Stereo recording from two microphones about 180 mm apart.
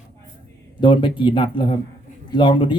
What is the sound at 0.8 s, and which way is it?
Speech, 25° left (ahead or behind).